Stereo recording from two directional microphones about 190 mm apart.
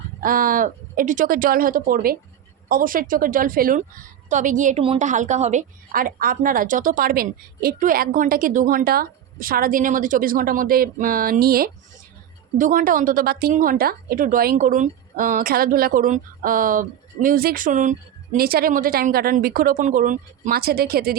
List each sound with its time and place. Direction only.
0.2 s a woman's voice: 45° right (ahead or behind)